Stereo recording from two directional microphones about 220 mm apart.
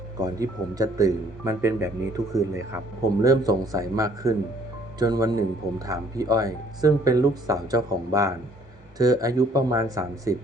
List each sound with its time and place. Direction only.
0.2 s speech: 15° right (ahead or behind)